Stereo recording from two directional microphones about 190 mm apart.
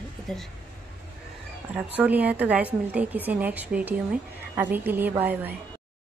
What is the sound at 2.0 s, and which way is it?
A woman's voice, 10° right (ahead or behind).